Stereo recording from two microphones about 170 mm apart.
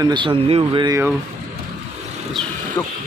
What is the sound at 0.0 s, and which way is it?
Speech, 25° right (ahead or behind).